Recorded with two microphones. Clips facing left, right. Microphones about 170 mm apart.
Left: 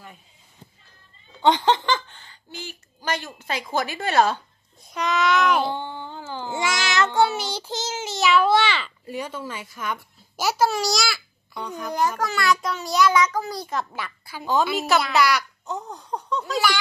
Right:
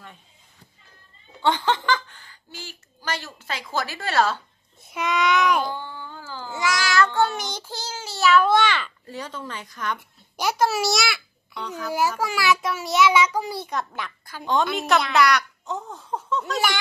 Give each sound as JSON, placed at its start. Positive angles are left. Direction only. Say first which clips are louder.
{"t": 1.4, "sound": "child singing", "louder": "left 3 dB", "side_deg": 20}
{"t": 1.9, "sound": "speech", "louder": "even", "side_deg": 25}
{"t": 4.8, "sound": "a child's voice", "louder": "even", "side_deg": 0}
{"t": 5.7, "sound": "child singing", "louder": "left 3 dB", "side_deg": 20}
{"t": 7.7, "sound": "child singing", "louder": "left 5 dB", "side_deg": 20}
{"t": 8.5, "sound": "a child's voice", "louder": "even", "side_deg": 10}
{"t": 13.6, "sound": "a child's voice", "louder": "even", "side_deg": 0}